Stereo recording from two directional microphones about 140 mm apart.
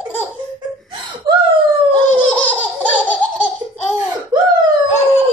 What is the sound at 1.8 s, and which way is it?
Laughter, 10° left (ahead or behind).